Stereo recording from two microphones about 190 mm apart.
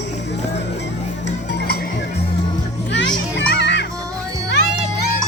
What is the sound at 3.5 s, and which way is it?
Music, 65° left (ahead or behind).